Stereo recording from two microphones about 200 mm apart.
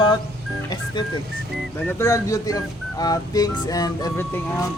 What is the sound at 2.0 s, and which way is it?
Speech, 15° left (ahead or behind).